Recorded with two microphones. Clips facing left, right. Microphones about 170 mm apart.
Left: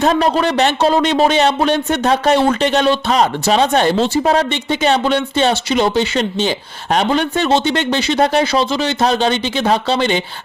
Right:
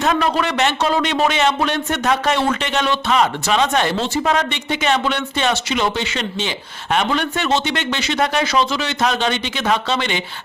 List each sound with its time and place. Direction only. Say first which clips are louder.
0.0 s speech: left 4 dB; 35° left (ahead or behind)